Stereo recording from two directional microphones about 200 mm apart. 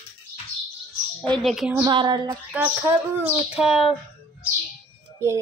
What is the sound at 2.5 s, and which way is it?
Speech, 5° right (ahead or behind).